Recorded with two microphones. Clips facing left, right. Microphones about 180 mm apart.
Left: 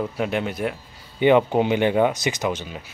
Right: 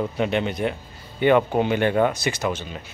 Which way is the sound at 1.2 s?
15° left (ahead or behind).